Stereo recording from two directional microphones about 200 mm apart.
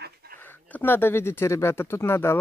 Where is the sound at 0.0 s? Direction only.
50° right (ahead or behind).